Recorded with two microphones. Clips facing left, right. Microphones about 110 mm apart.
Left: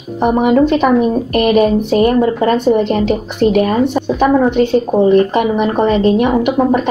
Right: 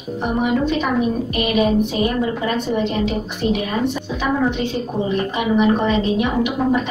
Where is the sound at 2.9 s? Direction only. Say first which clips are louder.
Left 7 dB; 60° left (ahead or behind).